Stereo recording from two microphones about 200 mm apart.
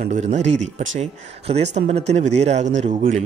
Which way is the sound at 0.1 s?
35° right (ahead or behind).